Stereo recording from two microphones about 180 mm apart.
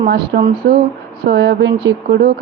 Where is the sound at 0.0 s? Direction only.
50° right (ahead or behind).